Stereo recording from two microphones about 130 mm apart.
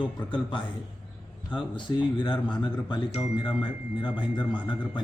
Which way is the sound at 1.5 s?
35° left (ahead or behind).